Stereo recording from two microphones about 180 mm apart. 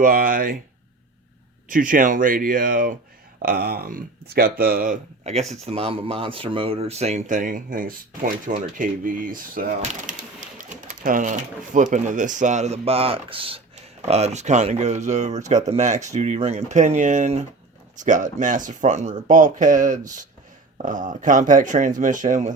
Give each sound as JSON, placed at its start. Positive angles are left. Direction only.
{"t": 0.0, "sound": "speech", "side_deg": -50}
{"t": 1.7, "sound": "speech", "side_deg": -50}